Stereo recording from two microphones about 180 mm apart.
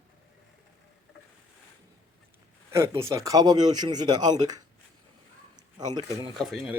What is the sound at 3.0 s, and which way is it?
Speech, 15° right (ahead or behind).